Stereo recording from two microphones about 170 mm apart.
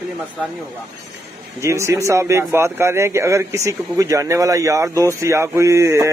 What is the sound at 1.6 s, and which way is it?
A man's voice, 15° right (ahead or behind).